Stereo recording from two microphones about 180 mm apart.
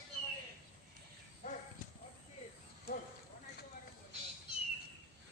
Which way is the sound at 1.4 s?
45° left (ahead or behind).